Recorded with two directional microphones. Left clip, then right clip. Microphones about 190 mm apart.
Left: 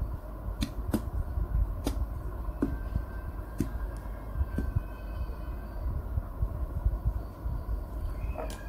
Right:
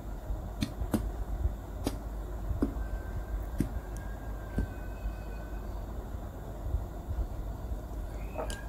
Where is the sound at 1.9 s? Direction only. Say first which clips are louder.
Even; centre (ahead or behind).